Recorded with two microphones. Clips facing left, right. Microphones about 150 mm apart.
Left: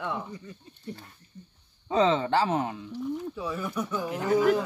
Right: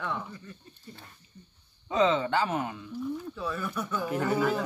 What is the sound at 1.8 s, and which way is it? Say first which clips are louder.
Speech: left 1 dB; 35° left (ahead or behind).